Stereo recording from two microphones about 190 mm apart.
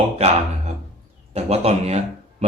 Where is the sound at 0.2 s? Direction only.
35° right (ahead or behind).